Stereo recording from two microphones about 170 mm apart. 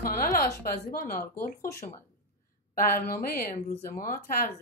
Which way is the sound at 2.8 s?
55° left (ahead or behind).